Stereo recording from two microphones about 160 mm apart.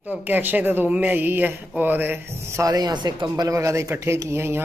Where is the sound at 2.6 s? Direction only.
25° right (ahead or behind).